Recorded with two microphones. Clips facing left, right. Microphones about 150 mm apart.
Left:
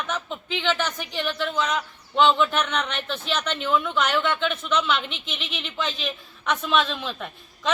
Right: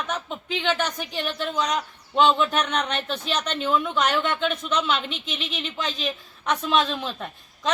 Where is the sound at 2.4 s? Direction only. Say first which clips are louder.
Even; 40° right (ahead or behind).